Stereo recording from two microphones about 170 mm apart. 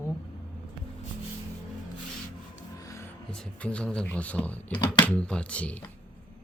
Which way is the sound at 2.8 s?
20° left (ahead or behind).